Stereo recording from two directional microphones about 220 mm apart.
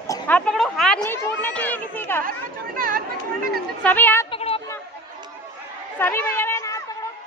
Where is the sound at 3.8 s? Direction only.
10° left (ahead or behind).